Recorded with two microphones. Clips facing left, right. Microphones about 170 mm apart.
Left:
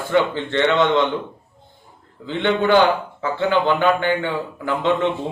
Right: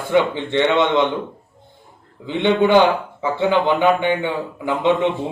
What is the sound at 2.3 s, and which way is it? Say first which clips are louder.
Speech: right 2 dB; 15° right (ahead or behind).